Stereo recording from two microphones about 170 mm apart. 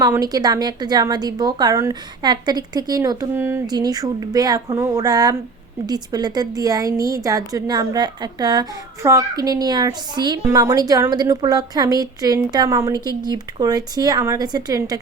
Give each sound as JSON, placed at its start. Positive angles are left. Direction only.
{"t": 0.0, "sound": "a woman's voice", "side_deg": -20}